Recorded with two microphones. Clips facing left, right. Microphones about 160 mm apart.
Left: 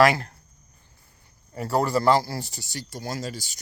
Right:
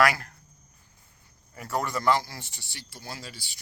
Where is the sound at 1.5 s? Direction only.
35° left (ahead or behind).